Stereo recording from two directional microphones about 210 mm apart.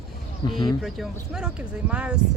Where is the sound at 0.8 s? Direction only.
Centre (ahead or behind).